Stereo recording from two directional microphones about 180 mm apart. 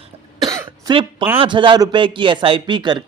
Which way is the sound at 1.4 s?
30° right (ahead or behind).